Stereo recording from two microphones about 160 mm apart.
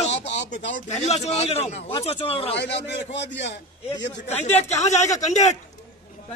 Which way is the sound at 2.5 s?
90° left.